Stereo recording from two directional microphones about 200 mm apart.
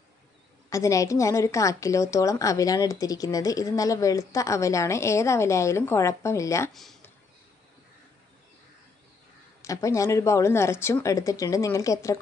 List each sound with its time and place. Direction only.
0.7 s a woman's voice: 15° left (ahead or behind)
6.7 s speech: centre (ahead or behind)
9.6 s a woman's voice: 15° left (ahead or behind)